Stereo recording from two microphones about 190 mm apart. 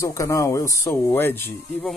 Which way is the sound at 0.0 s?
15° left (ahead or behind).